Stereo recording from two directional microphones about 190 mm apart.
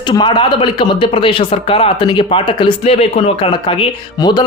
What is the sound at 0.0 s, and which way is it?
Speech, 25° left (ahead or behind).